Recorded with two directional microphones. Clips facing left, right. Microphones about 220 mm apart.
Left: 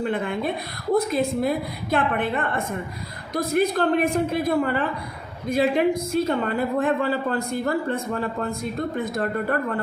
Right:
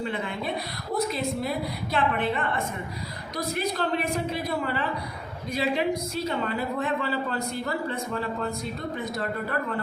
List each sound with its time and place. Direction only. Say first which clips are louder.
0.0 s speech: left 6 dB; 50° left (ahead or behind)